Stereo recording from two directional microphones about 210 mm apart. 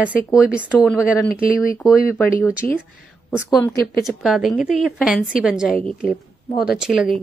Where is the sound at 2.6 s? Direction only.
5° left (ahead or behind).